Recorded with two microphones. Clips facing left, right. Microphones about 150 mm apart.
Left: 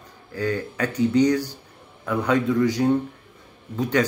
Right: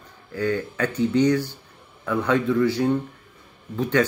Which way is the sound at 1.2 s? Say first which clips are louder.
Even; 40° left (ahead or behind).